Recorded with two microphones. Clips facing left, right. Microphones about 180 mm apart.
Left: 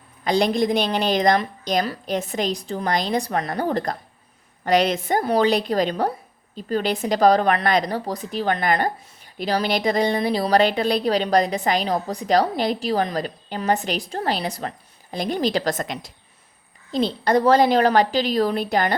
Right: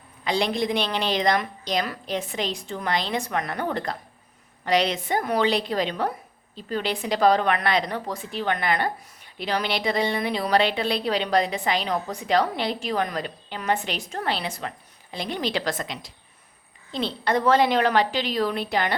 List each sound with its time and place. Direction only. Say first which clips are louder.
0.3 s a woman's voice: left 5 dB; 45° left (ahead or behind)